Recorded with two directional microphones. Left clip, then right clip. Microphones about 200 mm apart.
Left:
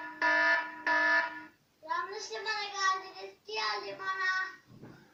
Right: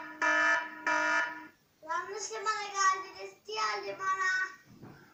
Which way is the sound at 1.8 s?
10° right (ahead or behind).